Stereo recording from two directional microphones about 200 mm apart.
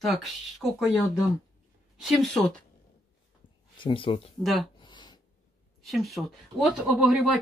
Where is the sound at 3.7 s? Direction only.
25° left (ahead or behind).